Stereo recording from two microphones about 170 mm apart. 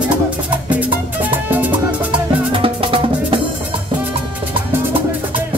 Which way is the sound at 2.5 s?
30° right (ahead or behind).